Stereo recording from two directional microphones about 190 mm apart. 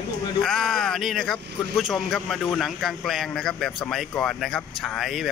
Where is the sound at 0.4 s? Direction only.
Centre (ahead or behind).